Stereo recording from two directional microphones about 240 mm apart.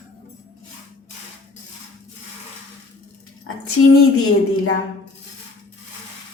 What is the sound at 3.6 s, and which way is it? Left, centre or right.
Speech, left.